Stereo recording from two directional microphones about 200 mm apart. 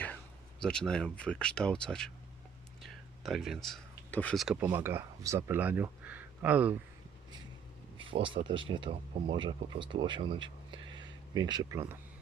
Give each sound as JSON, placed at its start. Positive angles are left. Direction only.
{"t": 0.6, "sound": "speech", "side_deg": 5}
{"t": 7.9, "sound": "speech", "side_deg": -25}